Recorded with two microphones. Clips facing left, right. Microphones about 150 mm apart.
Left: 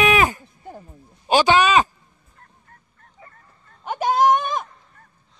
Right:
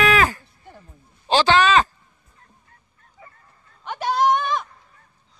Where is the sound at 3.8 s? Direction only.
45° left (ahead or behind).